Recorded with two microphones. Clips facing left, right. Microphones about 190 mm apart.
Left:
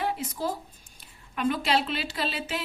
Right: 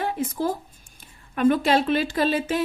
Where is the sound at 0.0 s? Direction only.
50° right (ahead or behind).